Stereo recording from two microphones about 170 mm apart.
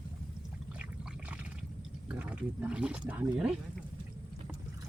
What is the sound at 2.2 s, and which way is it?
Speech, 5° right (ahead or behind).